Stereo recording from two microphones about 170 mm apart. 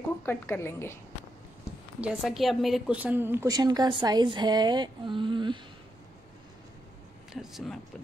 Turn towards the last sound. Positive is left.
turn(degrees=0)  # may be behind; listen again after turning